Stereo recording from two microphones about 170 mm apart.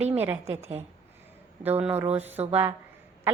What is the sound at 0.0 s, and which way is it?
Speech, 10° right (ahead or behind).